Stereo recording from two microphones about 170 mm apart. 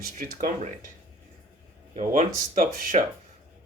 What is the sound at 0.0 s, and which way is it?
Speech, 55° right (ahead or behind).